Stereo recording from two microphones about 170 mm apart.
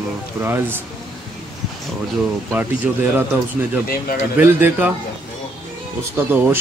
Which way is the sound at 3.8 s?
60° left (ahead or behind).